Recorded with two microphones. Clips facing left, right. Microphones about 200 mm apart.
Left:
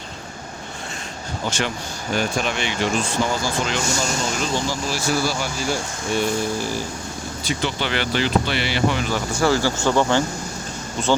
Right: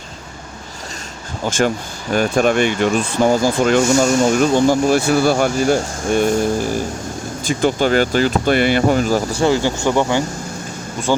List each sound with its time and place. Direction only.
1.5 s speech: 50° right (ahead or behind)
9.4 s speech: 20° right (ahead or behind)